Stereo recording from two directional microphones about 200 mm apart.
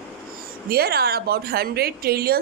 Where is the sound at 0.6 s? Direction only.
50° right (ahead or behind).